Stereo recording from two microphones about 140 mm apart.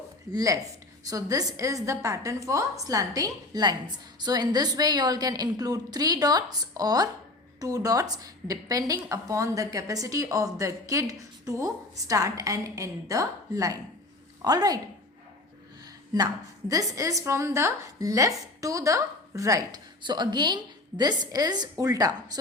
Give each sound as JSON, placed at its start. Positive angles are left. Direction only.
{"t": 0.3, "sound": "a woman's voice", "side_deg": -25}
{"t": 15.8, "sound": "a woman's voice", "side_deg": -30}